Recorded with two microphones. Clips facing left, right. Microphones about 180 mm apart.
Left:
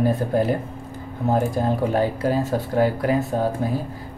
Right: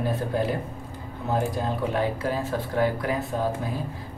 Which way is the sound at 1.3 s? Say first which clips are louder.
Left 5 dB; 45° left (ahead or behind).